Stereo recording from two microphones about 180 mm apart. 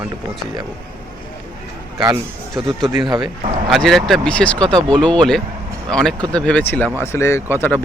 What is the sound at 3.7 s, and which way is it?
Speech, centre (ahead or behind).